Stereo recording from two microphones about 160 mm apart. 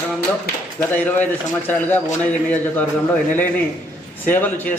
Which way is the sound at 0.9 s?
10° left (ahead or behind).